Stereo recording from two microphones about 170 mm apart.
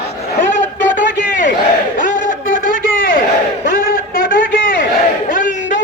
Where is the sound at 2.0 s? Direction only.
50° left (ahead or behind).